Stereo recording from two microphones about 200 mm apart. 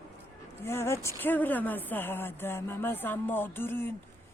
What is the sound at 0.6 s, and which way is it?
Speech, 10° left (ahead or behind).